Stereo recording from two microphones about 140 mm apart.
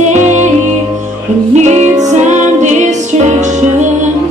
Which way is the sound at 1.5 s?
55° right (ahead or behind).